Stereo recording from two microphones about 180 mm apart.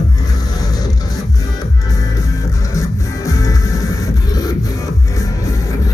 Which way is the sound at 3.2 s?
20° left (ahead or behind).